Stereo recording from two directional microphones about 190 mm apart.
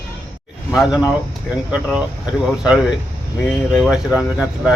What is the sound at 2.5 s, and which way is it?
A man's voice, 5° right (ahead or behind).